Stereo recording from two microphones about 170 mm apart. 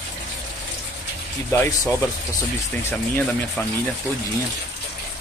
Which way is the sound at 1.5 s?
15° left (ahead or behind).